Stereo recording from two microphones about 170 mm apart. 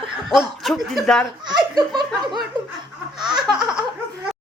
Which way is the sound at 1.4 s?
25° right (ahead or behind).